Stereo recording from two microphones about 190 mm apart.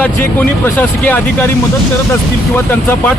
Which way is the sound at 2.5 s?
10° left (ahead or behind).